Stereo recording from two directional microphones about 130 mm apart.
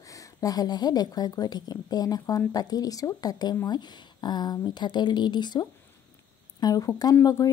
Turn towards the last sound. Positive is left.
turn(degrees=30)  # may be behind; listen again after turning